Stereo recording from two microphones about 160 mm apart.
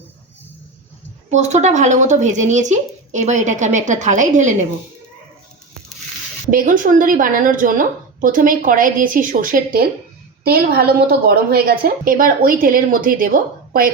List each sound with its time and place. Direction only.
1.3 s speech: 45° right (ahead or behind)
6.5 s a woman's voice: 60° right (ahead or behind)
10.4 s a woman's voice: 75° right (ahead or behind); by 13.3 s 60° right (ahead or behind)